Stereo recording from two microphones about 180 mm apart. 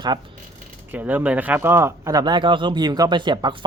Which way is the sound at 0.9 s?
10° right (ahead or behind).